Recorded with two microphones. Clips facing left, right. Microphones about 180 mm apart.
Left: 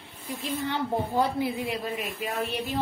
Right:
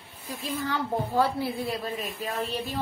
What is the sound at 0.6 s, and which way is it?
A woman's voice, 20° left (ahead or behind).